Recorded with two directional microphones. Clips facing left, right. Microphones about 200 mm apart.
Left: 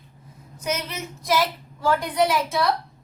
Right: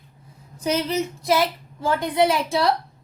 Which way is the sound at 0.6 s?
35° right (ahead or behind).